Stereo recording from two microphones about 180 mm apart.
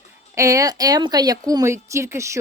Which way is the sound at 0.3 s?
15° right (ahead or behind).